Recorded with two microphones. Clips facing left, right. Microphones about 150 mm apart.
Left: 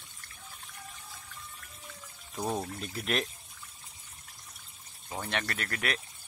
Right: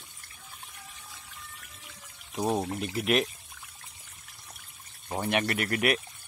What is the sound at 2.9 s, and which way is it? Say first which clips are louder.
Speech: right 6 dB; 5° right (ahead or behind).